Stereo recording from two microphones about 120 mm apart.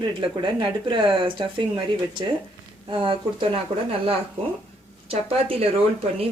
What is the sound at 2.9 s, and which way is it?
Speech, 45° right (ahead or behind).